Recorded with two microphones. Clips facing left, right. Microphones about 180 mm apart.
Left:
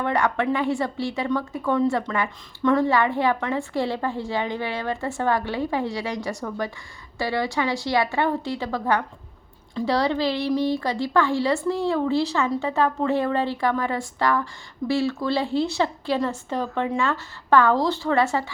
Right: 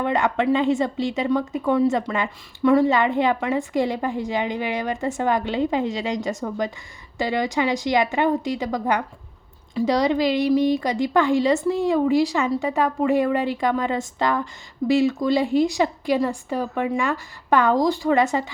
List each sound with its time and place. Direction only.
0.0 s a woman's voice: 20° right (ahead or behind)